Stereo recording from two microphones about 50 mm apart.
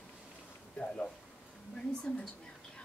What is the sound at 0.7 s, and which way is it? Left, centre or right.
Speech, left.